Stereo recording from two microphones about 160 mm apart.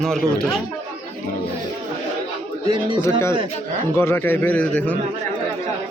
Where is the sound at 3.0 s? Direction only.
15° left (ahead or behind).